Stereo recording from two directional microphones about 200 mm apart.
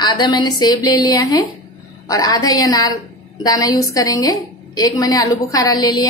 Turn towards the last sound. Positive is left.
turn(degrees=20)  # may be behind; listen again after turning